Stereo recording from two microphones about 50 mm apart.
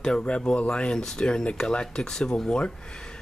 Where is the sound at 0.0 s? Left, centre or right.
Centre.